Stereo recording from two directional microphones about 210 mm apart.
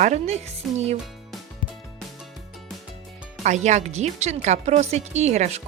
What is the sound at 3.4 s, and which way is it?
Speech, 35° right (ahead or behind).